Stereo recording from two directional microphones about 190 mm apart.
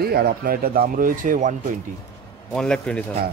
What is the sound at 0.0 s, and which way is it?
Speech, 55° right (ahead or behind).